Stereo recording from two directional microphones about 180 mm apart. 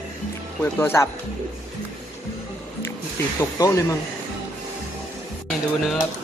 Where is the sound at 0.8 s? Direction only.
10° left (ahead or behind).